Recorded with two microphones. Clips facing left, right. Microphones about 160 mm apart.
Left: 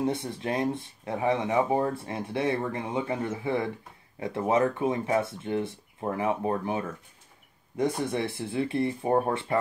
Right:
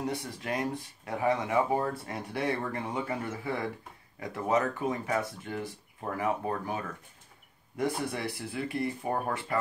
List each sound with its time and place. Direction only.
0.0 s speech: 25° left (ahead or behind)